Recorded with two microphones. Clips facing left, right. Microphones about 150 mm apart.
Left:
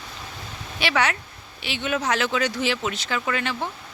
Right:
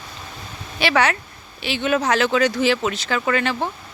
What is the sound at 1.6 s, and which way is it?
Speech, 90° right.